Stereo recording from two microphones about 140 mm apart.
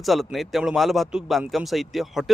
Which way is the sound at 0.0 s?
Centre (ahead or behind).